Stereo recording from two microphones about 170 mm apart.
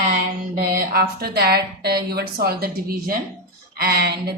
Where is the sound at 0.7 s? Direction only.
60° right (ahead or behind).